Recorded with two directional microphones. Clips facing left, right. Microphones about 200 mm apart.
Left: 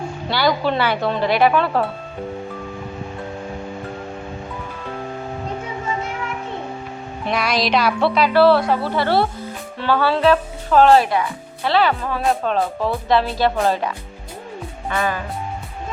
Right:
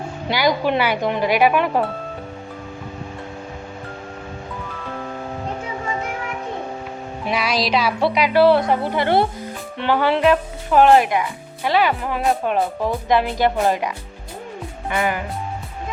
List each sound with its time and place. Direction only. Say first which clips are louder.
0.3 s speech: even; 15° right (ahead or behind)
7.3 s speech: left 1 dB; 5° right (ahead or behind)
8.0 s speech: even; 15° right (ahead or behind)